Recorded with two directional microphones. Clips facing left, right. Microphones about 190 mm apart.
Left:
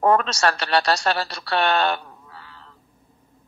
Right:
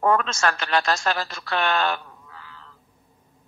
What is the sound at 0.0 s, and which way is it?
A woman's voice, 35° left (ahead or behind).